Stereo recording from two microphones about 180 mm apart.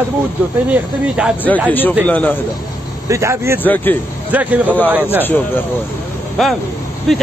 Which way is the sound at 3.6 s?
10° left (ahead or behind).